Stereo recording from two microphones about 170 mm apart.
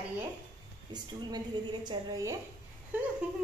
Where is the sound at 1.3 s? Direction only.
25° right (ahead or behind).